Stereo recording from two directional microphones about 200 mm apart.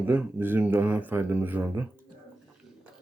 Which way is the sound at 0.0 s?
10° right (ahead or behind).